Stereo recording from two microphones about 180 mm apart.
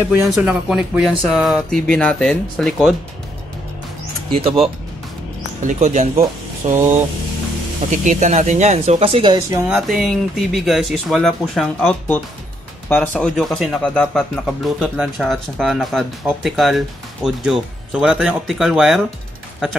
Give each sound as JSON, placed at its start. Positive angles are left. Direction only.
{"t": 0.3, "sound": "speech", "side_deg": -5}
{"t": 4.3, "sound": "speech", "side_deg": -35}
{"t": 5.6, "sound": "speech", "side_deg": -40}
{"t": 7.9, "sound": "speech", "side_deg": -45}
{"t": 9.6, "sound": "speech", "side_deg": -5}